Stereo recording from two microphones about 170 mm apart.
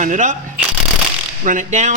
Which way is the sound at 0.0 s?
45° right (ahead or behind).